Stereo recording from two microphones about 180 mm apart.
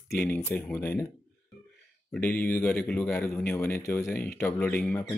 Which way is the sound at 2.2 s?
5° left (ahead or behind).